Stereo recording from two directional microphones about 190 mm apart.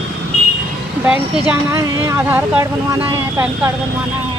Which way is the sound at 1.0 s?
10° right (ahead or behind).